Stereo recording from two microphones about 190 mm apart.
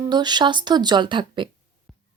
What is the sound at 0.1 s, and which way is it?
Speech, 20° right (ahead or behind).